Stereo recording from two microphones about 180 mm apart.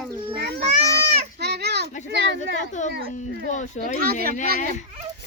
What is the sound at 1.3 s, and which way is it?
Children playing, 65° right (ahead or behind).